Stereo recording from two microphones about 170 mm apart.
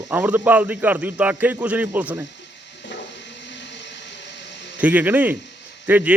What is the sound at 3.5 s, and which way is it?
Blender, 90° left.